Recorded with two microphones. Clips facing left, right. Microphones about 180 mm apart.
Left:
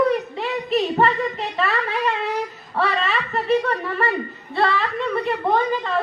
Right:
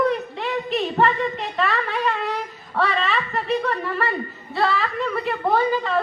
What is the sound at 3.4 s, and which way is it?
Snicker, centre (ahead or behind).